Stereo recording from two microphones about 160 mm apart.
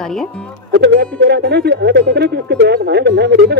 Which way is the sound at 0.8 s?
90° right.